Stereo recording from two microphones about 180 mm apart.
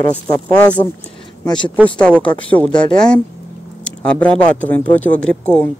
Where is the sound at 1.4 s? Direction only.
25° left (ahead or behind).